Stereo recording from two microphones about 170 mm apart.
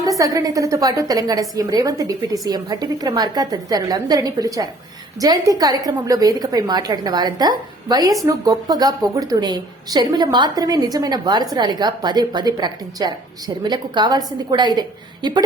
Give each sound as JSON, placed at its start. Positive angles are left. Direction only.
{"t": 0.0, "sound": "a woman's voice", "side_deg": -20}